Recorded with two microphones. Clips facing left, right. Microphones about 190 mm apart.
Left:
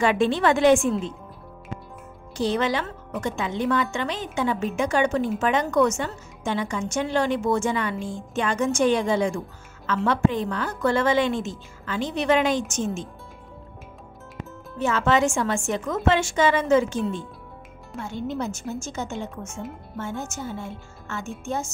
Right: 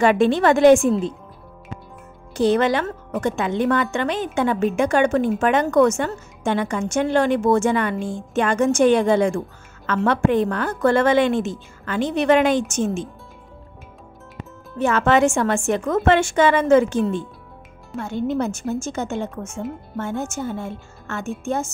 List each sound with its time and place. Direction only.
0.0 s a woman's voice: 50° right (ahead or behind)
2.3 s a woman's voice: 55° right (ahead or behind)
14.8 s a woman's voice: 60° right (ahead or behind)
19.4 s speech: 5° left (ahead or behind)
20.0 s a woman's voice: 55° right (ahead or behind)